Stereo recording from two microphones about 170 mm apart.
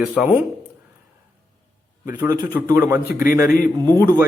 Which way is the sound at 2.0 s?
15° right (ahead or behind).